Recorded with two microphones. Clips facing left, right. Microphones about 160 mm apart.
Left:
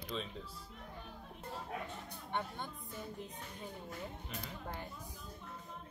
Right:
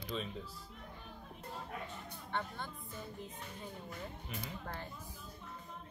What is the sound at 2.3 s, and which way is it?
Speech, 15° left (ahead or behind).